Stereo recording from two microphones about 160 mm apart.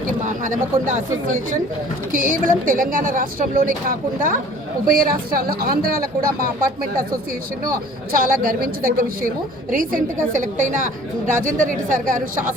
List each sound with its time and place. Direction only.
0.3 s speech: 55° right (ahead or behind)
2.1 s speech: 55° right (ahead or behind)
7.6 s speech: 65° right (ahead or behind)